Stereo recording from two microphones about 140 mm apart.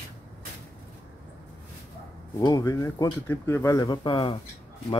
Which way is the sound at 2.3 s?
25° left (ahead or behind).